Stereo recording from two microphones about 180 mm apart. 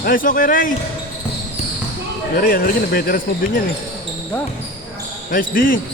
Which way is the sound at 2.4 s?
50° left (ahead or behind).